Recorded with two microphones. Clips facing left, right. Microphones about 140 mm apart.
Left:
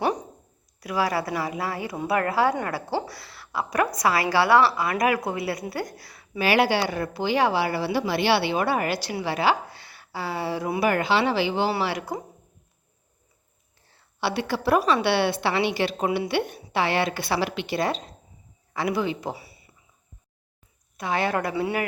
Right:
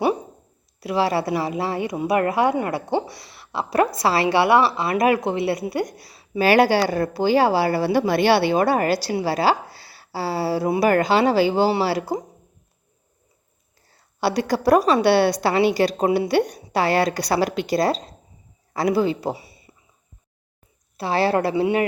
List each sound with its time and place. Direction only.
0.0 s a sound: 10° right (ahead or behind)
0.8 s a woman's voice: 25° right (ahead or behind)
6.4 s speech: 40° right (ahead or behind)
13.8 s a man's voice: 40° right (ahead or behind); by 19.7 s 25° right (ahead or behind)
21.0 s a woman's voice: 35° right (ahead or behind)